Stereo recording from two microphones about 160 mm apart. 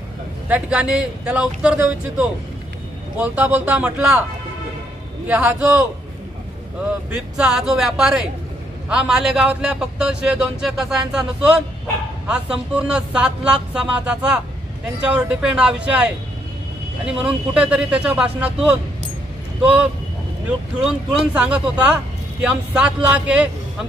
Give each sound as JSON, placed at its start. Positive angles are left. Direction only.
{"t": 0.5, "sound": "speech", "side_deg": -10}
{"t": 5.3, "sound": "speech", "side_deg": -10}
{"t": 7.2, "sound": "a man's voice", "side_deg": 0}
{"t": 12.3, "sound": "speech", "side_deg": -5}
{"t": 17.0, "sound": "a man's voice", "side_deg": -5}